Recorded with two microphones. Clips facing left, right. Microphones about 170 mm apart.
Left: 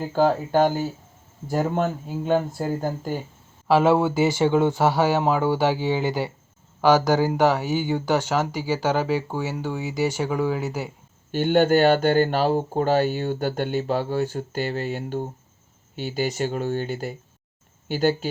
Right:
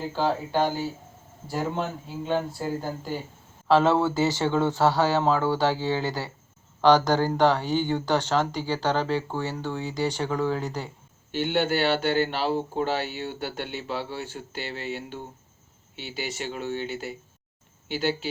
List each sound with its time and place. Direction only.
0.1 s speech: 45° left (ahead or behind)
3.7 s speech: 10° left (ahead or behind)
11.3 s speech: 45° left (ahead or behind)